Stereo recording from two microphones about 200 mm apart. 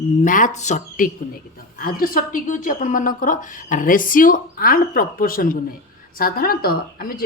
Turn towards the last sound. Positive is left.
turn(degrees=50)  # may be behind; listen again after turning